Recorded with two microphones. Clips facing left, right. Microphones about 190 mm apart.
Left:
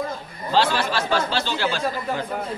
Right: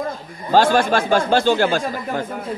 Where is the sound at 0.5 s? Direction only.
50° right (ahead or behind).